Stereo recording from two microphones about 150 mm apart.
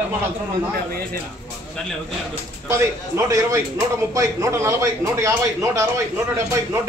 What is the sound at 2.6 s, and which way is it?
Speech, 15° right (ahead or behind).